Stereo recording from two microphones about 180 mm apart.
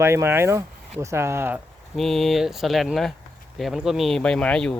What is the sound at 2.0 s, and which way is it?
Speech, centre (ahead or behind).